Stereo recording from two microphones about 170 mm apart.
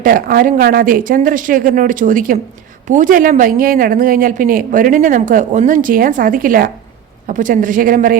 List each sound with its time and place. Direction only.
0.0 s speech: 55° right (ahead or behind)